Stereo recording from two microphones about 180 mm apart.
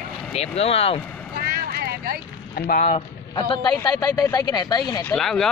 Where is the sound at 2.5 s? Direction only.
55° left (ahead or behind).